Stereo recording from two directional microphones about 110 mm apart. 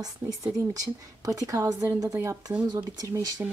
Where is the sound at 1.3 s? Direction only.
30° right (ahead or behind).